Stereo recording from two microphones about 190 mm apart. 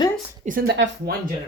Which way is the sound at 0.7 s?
70° right (ahead or behind).